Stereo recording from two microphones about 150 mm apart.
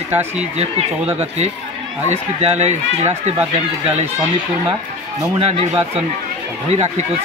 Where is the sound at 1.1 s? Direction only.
45° right (ahead or behind).